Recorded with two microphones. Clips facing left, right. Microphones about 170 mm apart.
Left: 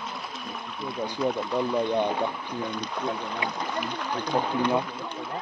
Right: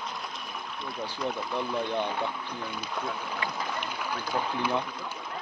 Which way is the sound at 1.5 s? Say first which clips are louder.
Left 5 dB; 15° left (ahead or behind).